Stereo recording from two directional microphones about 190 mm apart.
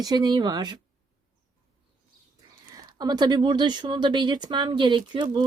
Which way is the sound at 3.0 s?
20° right (ahead or behind).